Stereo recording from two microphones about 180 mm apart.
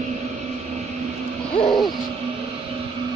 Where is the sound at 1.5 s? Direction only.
25° left (ahead or behind).